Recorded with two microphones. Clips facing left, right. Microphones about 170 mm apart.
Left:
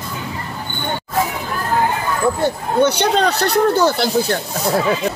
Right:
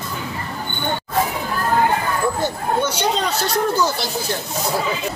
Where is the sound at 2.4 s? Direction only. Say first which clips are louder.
Left 5 dB; 65° left (ahead or behind).